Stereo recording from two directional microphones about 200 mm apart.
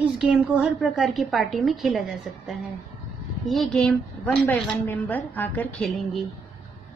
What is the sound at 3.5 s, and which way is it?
A woman's voice, centre (ahead or behind).